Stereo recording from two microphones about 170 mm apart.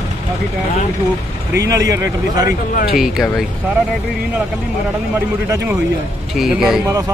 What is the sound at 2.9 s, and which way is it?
Speech, centre (ahead or behind).